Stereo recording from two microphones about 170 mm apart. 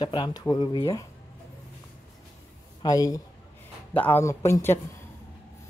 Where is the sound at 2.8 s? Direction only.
20° left (ahead or behind).